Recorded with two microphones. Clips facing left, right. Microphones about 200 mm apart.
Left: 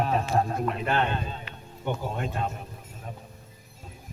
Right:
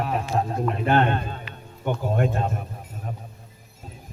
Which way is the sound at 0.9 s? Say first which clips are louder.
Right 6 dB; 55° right (ahead or behind).